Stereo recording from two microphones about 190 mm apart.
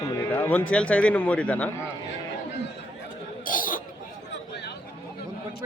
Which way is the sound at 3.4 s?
45° left (ahead or behind).